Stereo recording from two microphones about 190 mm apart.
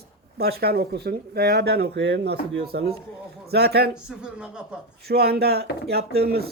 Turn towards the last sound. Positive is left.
turn(degrees=-55)  # may be behind; listen again after turning